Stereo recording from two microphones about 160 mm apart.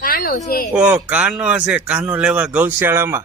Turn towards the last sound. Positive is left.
turn(degrees=-15)  # may be behind; listen again after turning